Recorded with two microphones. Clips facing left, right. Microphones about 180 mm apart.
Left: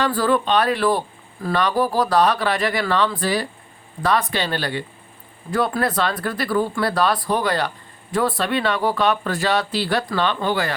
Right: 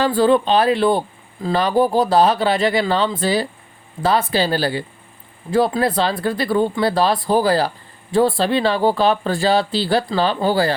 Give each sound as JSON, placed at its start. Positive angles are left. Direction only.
{"t": 0.0, "sound": "speech", "side_deg": -25}